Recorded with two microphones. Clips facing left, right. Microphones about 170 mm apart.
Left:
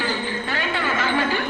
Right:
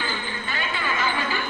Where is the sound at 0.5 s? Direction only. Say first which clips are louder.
Left 2 dB; 70° left (ahead or behind).